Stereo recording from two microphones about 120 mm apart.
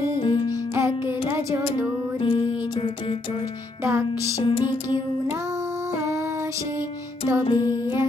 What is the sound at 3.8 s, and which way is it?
Music, 25° right (ahead or behind).